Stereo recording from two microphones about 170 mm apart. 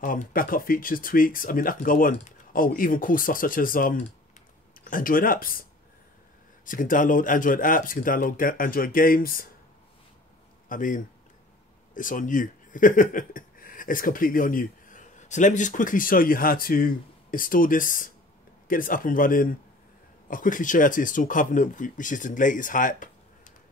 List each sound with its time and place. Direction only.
0.0 s speech: 55° left (ahead or behind)
10.7 s a man's voice: 50° left (ahead or behind)